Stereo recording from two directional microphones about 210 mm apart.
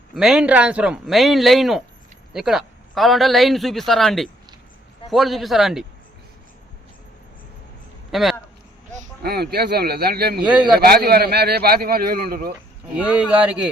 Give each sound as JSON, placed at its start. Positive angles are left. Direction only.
{"t": 0.1, "sound": "speech", "side_deg": 0}
{"t": 8.1, "sound": "speech", "side_deg": 0}
{"t": 9.2, "sound": "a man's voice", "side_deg": -50}
{"t": 10.4, "sound": "speech", "side_deg": -5}
{"t": 10.8, "sound": "a man's voice", "side_deg": -45}
{"t": 12.9, "sound": "speech", "side_deg": -5}